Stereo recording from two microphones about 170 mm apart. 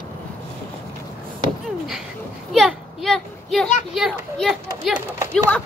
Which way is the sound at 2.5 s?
Centre (ahead or behind).